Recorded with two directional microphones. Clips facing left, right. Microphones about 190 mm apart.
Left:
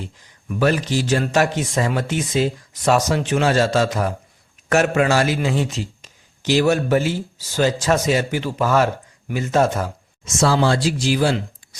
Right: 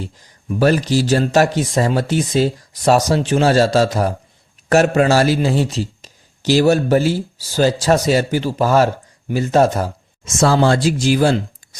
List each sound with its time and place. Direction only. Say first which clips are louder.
0.0 s a man's voice: right 4 dB; 35° right (ahead or behind)